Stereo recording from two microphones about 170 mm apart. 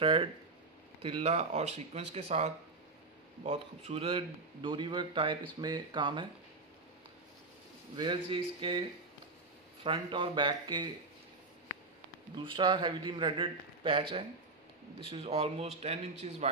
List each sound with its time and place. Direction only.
0.0 s a man's voice: 30° right (ahead or behind)
7.9 s speech: 25° right (ahead or behind)
9.8 s a man's voice: 30° right (ahead or behind)
12.4 s a man's voice: 25° right (ahead or behind)
15.0 s speech: 35° right (ahead or behind)